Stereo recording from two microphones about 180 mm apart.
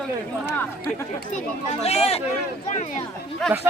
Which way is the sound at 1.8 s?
35° left (ahead or behind).